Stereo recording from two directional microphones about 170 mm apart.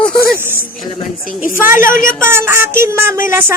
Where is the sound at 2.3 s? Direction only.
15° right (ahead or behind).